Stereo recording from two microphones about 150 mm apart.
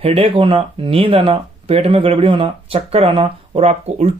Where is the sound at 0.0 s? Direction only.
40° right (ahead or behind).